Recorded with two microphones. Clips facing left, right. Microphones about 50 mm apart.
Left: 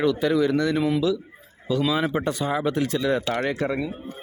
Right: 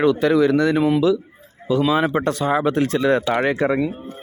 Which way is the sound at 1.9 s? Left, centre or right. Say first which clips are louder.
Right 5 dB; right.